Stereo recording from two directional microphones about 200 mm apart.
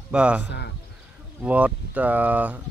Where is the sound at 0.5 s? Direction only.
60° left (ahead or behind).